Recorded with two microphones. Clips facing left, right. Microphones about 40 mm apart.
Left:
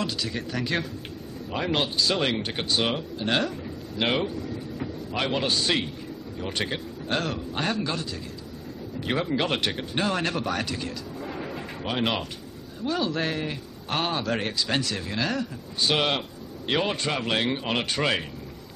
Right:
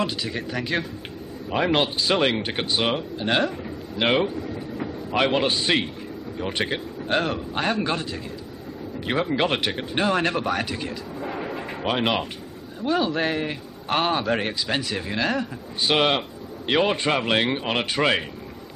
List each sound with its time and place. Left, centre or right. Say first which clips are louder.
0.0 s speech: right 3 dB; centre
1.5 s a man's voice: right 5 dB; right
7.8 s a man's voice: right 4 dB; right
9.0 s a man's voice: right 3 dB; centre